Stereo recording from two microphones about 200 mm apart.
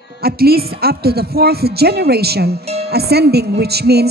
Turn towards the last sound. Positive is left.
turn(degrees=-55)  # may be behind; listen again after turning